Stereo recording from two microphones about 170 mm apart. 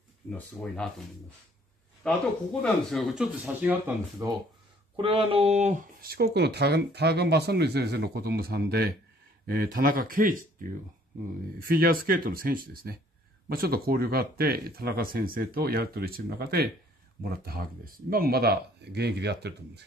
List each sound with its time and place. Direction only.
0.3 s speech: 5° left (ahead or behind)
2.0 s speech: 5° left (ahead or behind)
3.4 s speech: 10° right (ahead or behind)
4.9 s speech: 35° right (ahead or behind); by 10.4 s 55° right (ahead or behind)
11.6 s speech: 60° right (ahead or behind); by 19.8 s 80° right